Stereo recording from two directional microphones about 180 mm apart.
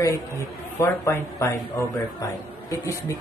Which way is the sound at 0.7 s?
15° left (ahead or behind).